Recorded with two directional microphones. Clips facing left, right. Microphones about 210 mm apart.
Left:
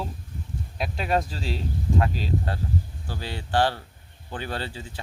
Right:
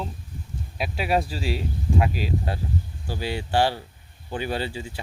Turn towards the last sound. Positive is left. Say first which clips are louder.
# right 4 dB
turn(degrees=-10)  # may be behind; listen again after turning